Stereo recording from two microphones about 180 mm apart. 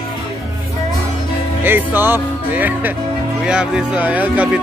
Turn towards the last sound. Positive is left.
turn(degrees=-10)  # may be behind; listen again after turning